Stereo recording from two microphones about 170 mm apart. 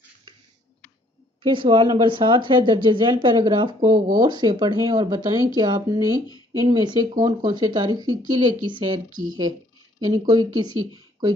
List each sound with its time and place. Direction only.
1.4 s speech: 30° right (ahead or behind)